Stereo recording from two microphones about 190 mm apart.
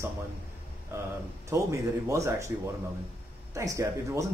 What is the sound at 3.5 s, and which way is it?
Speech, 15° right (ahead or behind).